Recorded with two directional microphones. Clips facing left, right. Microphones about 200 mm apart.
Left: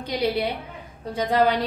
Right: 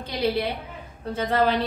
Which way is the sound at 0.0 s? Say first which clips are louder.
Left 1 dB; 15° left (ahead or behind).